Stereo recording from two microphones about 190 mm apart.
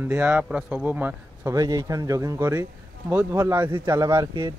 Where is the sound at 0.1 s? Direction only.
10° right (ahead or behind).